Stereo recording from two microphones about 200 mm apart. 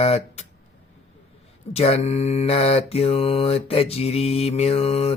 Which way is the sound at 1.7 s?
30° left (ahead or behind).